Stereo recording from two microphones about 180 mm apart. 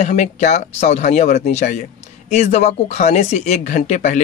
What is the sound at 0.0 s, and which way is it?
Speech, 40° left (ahead or behind).